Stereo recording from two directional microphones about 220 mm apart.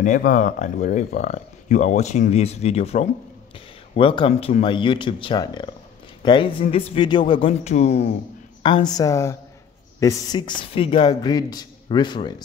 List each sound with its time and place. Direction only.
0.0 s a woman's voice: 35° left (ahead or behind); by 12.4 s 20° left (ahead or behind)